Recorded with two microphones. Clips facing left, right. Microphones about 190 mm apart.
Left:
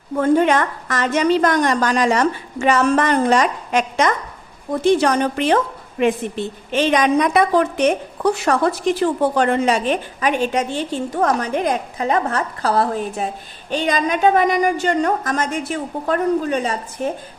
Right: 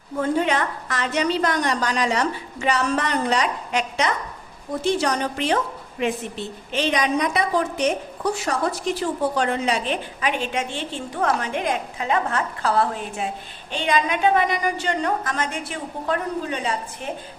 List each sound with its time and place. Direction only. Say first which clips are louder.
0.2 s a woman's voice: left 6 dB; 50° left (ahead or behind)